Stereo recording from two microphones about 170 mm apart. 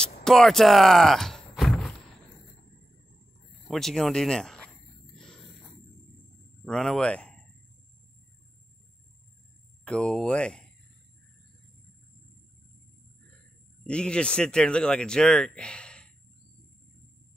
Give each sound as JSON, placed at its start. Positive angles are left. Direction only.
{"t": 0.0, "sound": "a sound", "side_deg": 5}
{"t": 3.6, "sound": "speech", "side_deg": 0}
{"t": 5.1, "sound": "a sound", "side_deg": 5}
{"t": 6.6, "sound": "speech", "side_deg": 0}
{"t": 9.8, "sound": "speech", "side_deg": 5}
{"t": 13.8, "sound": "speech", "side_deg": 5}